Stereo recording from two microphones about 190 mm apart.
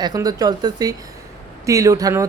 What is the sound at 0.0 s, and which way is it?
A man's voice, 20° right (ahead or behind).